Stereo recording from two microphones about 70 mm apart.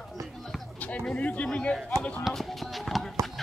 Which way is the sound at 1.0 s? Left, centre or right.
Centre.